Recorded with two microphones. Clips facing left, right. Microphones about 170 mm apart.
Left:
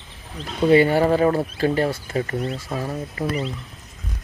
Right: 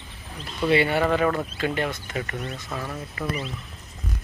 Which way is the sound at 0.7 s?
40° left (ahead or behind).